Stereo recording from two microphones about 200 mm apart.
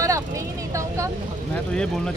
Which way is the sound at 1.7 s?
5° left (ahead or behind).